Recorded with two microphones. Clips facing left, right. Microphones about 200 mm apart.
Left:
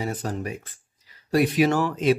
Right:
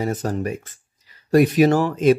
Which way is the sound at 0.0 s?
45° right (ahead or behind).